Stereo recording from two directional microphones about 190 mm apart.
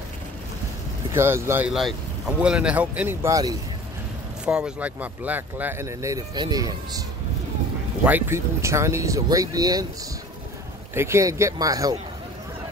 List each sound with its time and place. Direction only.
1.1 s speech: 15° right (ahead or behind)
1.7 s speech: centre (ahead or behind); by 3.5 s 15° right (ahead or behind)
4.5 s speech: 5° right (ahead or behind); by 6.7 s 20° right (ahead or behind)
8.0 s speech: 10° right (ahead or behind)
11.0 s speech: 15° right (ahead or behind)